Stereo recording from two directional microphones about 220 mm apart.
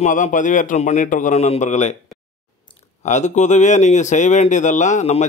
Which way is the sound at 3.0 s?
30° left (ahead or behind).